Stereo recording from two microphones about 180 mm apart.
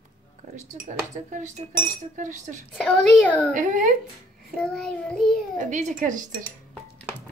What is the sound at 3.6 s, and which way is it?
Speech, 45° right (ahead or behind).